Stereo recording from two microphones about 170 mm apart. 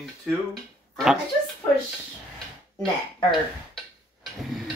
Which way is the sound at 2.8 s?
30° left (ahead or behind).